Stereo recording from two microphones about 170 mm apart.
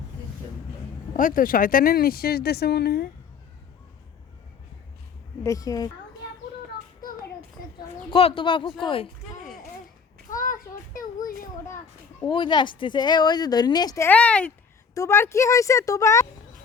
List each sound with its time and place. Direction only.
1.1 s speech: 55° left (ahead or behind); by 3.1 s 70° left (ahead or behind)
5.4 s speech: 20° left (ahead or behind)
8.1 s speech: 30° left (ahead or behind)
10.3 s a sound: 50° left (ahead or behind)
12.3 s a woman's voice: 25° left (ahead or behind)